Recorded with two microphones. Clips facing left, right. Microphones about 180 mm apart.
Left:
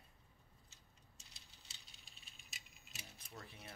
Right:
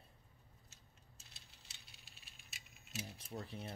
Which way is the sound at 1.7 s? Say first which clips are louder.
Right 1 dB; centre (ahead or behind).